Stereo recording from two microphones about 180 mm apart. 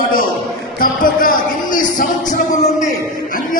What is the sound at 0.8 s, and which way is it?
Music, 50° left (ahead or behind).